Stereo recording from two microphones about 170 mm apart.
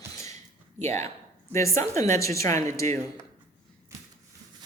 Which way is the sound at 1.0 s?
15° left (ahead or behind).